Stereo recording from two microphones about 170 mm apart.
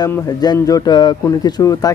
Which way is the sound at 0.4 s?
20° left (ahead or behind).